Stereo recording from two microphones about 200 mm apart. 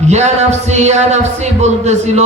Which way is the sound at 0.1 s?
35° right (ahead or behind).